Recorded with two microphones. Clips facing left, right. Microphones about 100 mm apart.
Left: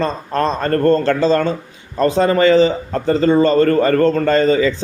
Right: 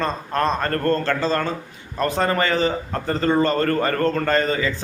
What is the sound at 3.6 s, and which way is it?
Speech, 40° left (ahead or behind).